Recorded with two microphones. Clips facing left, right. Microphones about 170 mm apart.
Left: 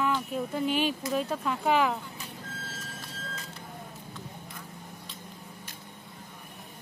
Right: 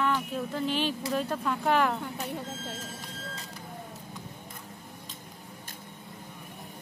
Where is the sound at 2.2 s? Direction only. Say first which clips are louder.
Right 9 dB; 70° right (ahead or behind).